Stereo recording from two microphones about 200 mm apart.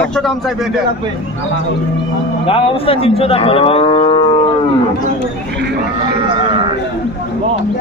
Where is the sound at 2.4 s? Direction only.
25° left (ahead or behind).